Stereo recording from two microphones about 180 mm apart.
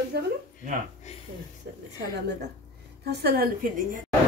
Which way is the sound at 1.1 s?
35° left (ahead or behind).